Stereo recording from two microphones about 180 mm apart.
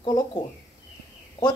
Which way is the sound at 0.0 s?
25° left (ahead or behind).